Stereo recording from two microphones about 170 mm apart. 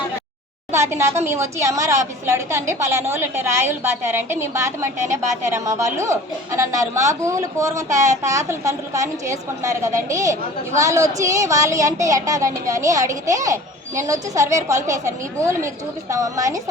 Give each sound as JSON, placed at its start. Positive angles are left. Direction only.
{"t": 0.7, "sound": "a woman's voice", "side_deg": -15}